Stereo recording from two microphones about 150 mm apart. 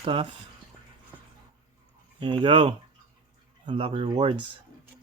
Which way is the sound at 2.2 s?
35° right (ahead or behind).